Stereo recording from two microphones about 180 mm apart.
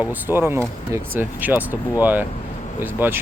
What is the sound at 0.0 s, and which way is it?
Speech, 10° right (ahead or behind).